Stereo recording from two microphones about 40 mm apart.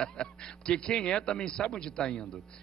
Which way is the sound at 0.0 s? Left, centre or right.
Left.